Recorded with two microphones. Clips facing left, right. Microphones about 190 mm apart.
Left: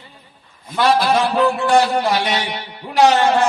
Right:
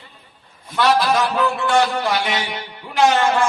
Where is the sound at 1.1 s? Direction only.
30° left (ahead or behind).